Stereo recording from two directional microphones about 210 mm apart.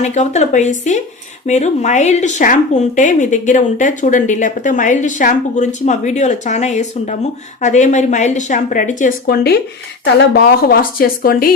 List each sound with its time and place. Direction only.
0.0 s speech: 35° left (ahead or behind)